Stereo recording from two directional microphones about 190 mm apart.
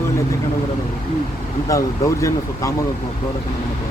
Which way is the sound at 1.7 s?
15° left (ahead or behind).